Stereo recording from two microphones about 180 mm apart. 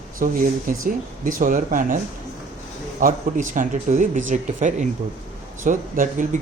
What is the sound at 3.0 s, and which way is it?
Speech, 45° right (ahead or behind).